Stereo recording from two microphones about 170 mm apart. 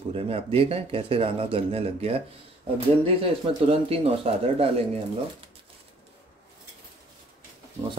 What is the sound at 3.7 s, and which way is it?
Speech, 35° right (ahead or behind).